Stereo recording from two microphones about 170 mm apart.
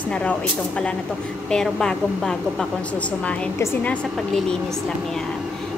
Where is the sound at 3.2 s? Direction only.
15° left (ahead or behind).